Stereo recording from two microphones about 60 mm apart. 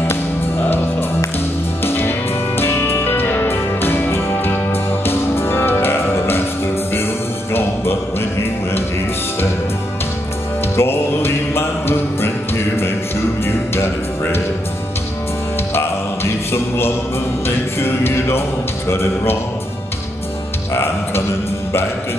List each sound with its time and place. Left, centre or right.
1.9 s music: left
7.5 s music: left
10.8 s music: left
13.7 s music: left
16.5 s music: left
18.9 s a man's voice: left
20.7 s music: left